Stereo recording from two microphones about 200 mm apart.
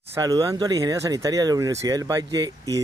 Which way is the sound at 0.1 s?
15° right (ahead or behind).